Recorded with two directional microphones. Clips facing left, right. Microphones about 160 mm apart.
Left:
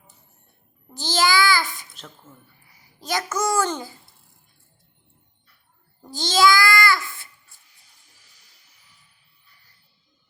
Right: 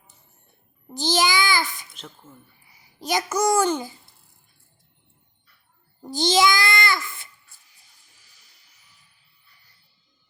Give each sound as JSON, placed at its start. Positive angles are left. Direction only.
{"t": 0.9, "sound": "a child's voice", "side_deg": -15}
{"t": 3.0, "sound": "a child's voice", "side_deg": -15}
{"t": 6.1, "sound": "a child's voice", "side_deg": -15}